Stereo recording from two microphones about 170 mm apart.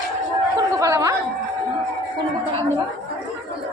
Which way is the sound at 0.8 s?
20° right (ahead or behind).